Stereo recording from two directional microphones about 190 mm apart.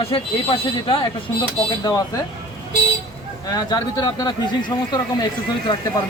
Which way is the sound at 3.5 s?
20° left (ahead or behind).